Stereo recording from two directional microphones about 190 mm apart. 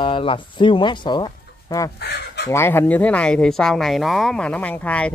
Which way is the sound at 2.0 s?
60° left (ahead or behind).